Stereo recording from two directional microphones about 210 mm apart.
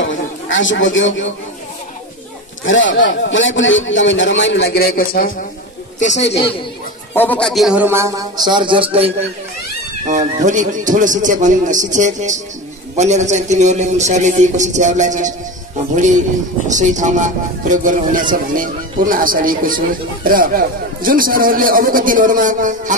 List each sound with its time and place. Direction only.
0.0 s a sound: 65° left (ahead or behind)
2.6 s a man's voice: 65° left (ahead or behind); by 5.3 s 45° left (ahead or behind)
7.2 s a man's voice: 5° left (ahead or behind); by 9.1 s 25° right (ahead or behind)
10.0 s a man's voice: 35° right (ahead or behind)
16.6 s a man's voice: 35° right (ahead or behind)